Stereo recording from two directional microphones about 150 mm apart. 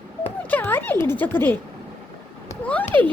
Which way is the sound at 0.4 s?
10° left (ahead or behind).